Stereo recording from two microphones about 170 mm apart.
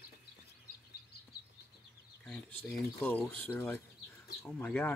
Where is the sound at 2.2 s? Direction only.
10° left (ahead or behind).